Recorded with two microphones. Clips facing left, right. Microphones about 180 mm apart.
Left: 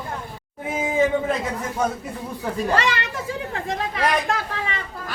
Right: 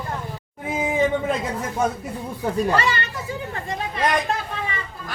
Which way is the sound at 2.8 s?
90° left.